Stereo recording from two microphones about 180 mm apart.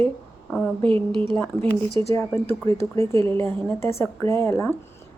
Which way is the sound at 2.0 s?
15° left (ahead or behind).